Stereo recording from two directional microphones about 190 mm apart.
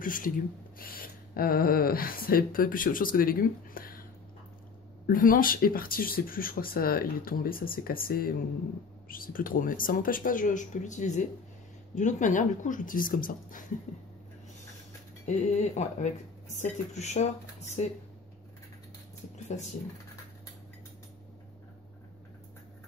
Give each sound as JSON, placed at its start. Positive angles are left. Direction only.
{"t": 0.0, "sound": "speech", "side_deg": 45}
{"t": 5.0, "sound": "speech", "side_deg": 45}
{"t": 15.2, "sound": "speech", "side_deg": 40}
{"t": 19.5, "sound": "speech", "side_deg": 40}